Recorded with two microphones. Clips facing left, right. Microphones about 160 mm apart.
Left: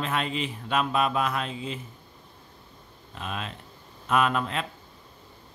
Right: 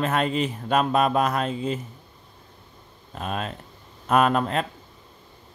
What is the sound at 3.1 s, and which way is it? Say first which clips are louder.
A man's voice: right 5 dB; 45° right (ahead or behind).